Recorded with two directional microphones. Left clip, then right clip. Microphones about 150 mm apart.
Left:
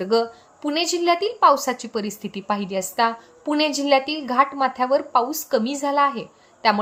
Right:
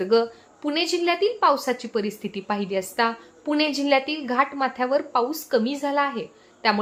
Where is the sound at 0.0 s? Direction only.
45° left (ahead or behind).